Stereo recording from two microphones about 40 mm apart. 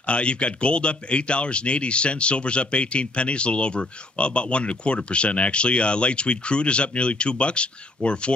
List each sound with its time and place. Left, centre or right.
0.0 s speech: left